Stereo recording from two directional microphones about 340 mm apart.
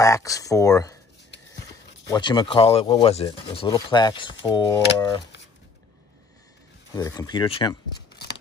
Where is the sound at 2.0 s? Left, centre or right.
Centre.